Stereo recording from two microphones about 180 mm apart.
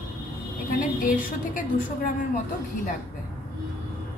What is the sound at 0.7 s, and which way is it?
Speech, 45° left (ahead or behind).